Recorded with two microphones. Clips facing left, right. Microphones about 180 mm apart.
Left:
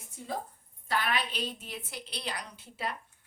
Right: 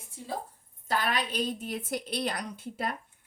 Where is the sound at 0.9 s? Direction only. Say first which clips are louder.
Right 2 dB; 40° right (ahead or behind).